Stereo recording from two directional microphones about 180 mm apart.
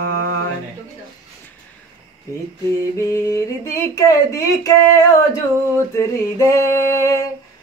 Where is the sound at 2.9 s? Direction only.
15° left (ahead or behind).